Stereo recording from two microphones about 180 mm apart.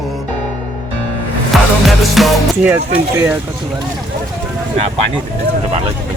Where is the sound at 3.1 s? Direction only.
10° right (ahead or behind).